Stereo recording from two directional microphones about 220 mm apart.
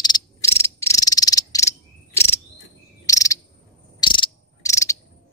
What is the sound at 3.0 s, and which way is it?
Cricket, 15° left (ahead or behind).